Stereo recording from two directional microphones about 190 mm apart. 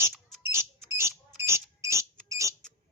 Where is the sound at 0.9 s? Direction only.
15° right (ahead or behind).